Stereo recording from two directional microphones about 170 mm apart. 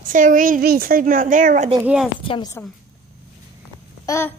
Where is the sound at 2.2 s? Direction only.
30° left (ahead or behind).